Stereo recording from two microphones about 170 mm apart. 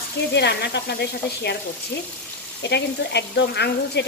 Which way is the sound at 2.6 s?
85° left.